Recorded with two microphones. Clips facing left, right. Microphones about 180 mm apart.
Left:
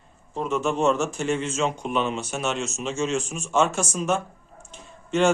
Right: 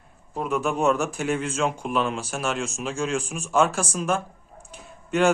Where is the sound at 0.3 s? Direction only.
10° right (ahead or behind).